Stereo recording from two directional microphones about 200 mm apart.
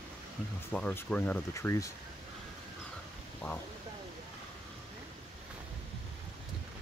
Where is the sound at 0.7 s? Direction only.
10° left (ahead or behind).